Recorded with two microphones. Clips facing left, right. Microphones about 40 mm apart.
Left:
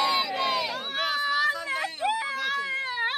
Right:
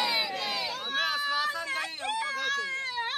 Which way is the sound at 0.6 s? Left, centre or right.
Centre.